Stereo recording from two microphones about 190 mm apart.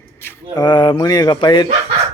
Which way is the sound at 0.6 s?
20° left (ahead or behind).